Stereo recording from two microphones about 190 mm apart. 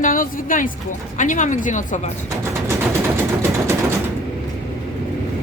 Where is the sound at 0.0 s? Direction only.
45° left (ahead or behind).